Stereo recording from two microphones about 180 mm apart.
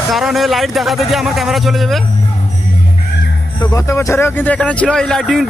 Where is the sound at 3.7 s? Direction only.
15° left (ahead or behind); by 5.5 s centre (ahead or behind).